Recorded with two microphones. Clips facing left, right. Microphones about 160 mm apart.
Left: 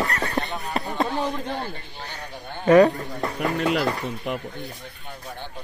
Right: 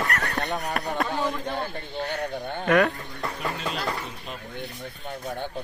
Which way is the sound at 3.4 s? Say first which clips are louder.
Left 9 dB; 65° left (ahead or behind).